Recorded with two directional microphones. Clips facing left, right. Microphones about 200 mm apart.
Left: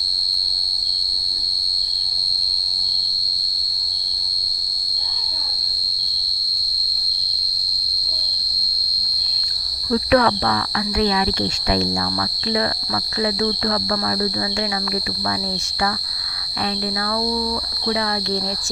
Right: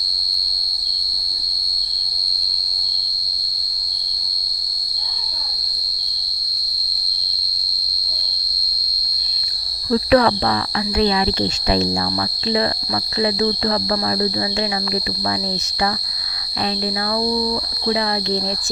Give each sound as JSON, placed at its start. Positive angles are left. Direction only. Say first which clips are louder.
{"t": 9.9, "sound": "speech", "louder": "right 2 dB", "side_deg": -30}
{"t": 16.6, "sound": "speech", "louder": "right 2 dB", "side_deg": -20}